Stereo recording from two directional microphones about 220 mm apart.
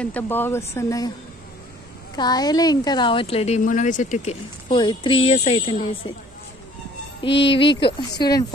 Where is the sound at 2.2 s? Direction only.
20° left (ahead or behind).